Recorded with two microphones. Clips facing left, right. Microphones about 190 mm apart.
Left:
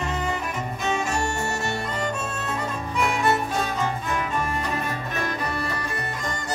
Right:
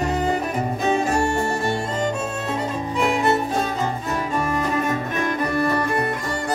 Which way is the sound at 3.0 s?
25° right (ahead or behind).